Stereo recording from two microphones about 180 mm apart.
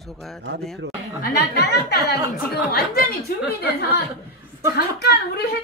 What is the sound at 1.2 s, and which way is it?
A woman's voice, 60° left (ahead or behind).